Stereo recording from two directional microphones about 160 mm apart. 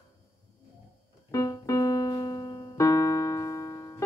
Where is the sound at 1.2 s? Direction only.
20° left (ahead or behind).